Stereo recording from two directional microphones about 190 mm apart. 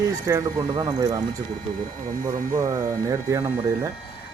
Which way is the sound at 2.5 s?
15° right (ahead or behind).